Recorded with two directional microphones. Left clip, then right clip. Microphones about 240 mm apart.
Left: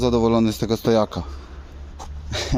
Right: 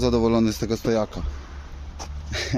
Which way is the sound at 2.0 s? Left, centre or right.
Centre.